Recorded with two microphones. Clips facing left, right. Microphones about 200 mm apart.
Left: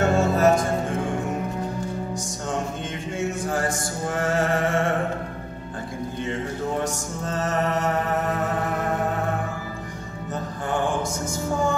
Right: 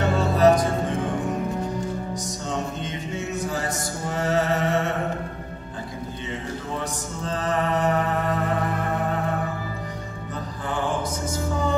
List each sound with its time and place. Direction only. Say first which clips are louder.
0.0 s music: even; 50° left (ahead or behind)
3.3 s mantra: left 2 dB; 50° left (ahead or behind)
6.8 s music: left 3 dB; 45° left (ahead or behind)